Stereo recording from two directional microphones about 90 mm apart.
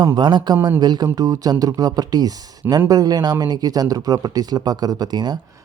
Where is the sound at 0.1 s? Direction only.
60° right (ahead or behind).